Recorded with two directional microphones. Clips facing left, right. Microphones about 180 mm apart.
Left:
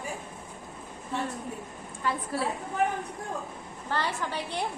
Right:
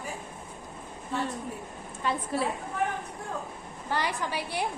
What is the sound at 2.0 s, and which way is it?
Speech, 20° right (ahead or behind).